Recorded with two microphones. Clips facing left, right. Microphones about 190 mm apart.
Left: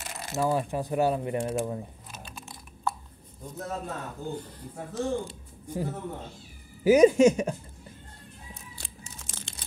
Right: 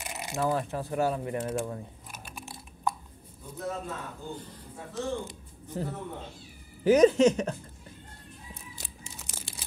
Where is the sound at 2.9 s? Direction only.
15° right (ahead or behind).